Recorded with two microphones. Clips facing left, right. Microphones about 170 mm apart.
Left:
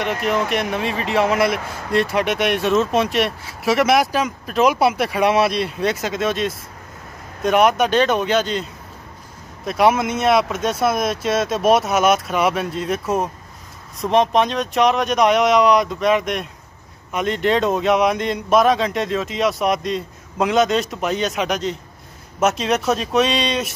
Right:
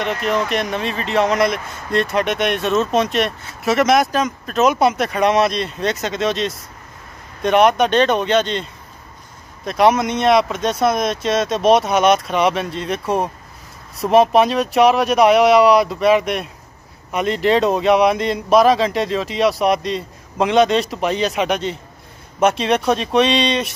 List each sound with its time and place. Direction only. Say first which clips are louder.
0.0 s speech: right 1 dB; 10° left (ahead or behind)
9.7 s speech: right 2 dB; 5° left (ahead or behind)